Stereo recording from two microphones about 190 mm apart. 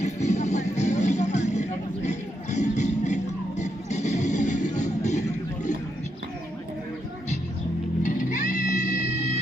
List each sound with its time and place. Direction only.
0.0 s music: 35° left (ahead or behind)
8.0 s music: 40° left (ahead or behind)